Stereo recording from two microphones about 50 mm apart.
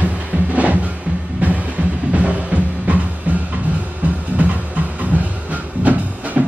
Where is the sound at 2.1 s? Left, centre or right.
Right.